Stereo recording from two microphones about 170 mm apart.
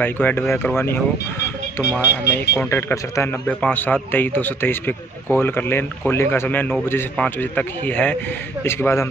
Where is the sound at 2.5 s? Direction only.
10° left (ahead or behind).